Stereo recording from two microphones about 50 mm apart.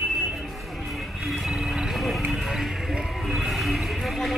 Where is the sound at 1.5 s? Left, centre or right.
Centre.